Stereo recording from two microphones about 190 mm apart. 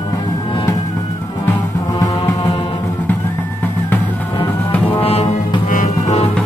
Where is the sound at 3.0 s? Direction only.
10° left (ahead or behind).